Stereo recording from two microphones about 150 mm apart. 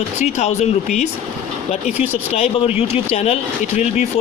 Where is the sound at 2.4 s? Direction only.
40° left (ahead or behind).